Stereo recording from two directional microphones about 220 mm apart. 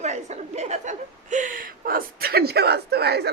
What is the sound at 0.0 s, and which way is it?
A woman's voice, 30° right (ahead or behind).